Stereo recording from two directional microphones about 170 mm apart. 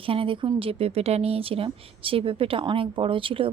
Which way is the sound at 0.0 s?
30° right (ahead or behind).